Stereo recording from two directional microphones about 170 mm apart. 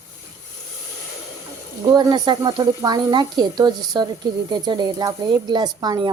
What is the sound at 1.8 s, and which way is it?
Speech, 25° right (ahead or behind).